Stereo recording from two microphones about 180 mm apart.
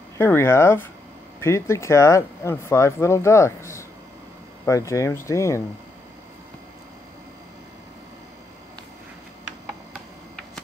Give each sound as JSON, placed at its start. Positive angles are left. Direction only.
{"t": 0.2, "sound": "speech", "side_deg": 15}